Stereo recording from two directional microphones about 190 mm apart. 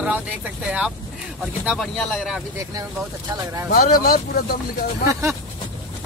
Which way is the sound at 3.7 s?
50° left (ahead or behind).